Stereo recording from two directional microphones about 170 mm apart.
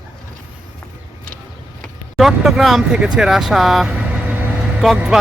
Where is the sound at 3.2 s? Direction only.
5° right (ahead or behind).